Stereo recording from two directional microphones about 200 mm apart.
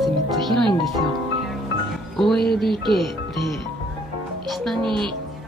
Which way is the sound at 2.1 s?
Centre (ahead or behind).